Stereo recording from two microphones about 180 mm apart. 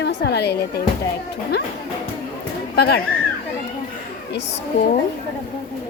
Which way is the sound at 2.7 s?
60° left (ahead or behind).